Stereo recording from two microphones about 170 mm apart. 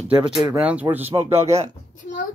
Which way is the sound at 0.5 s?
5° right (ahead or behind).